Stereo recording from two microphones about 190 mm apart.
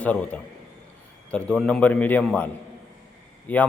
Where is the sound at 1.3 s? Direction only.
5° left (ahead or behind).